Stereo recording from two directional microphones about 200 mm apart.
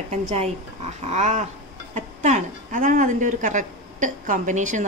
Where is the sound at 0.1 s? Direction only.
35° right (ahead or behind).